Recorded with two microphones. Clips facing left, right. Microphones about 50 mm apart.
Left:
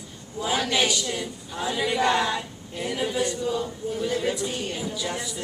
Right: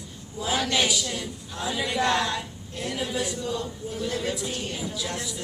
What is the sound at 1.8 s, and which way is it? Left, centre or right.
Speech, centre.